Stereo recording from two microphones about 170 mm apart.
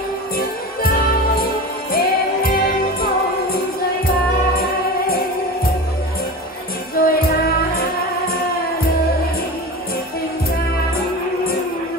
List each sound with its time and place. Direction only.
1.4 s music: 60° left (ahead or behind)
7.0 s music: 60° left (ahead or behind)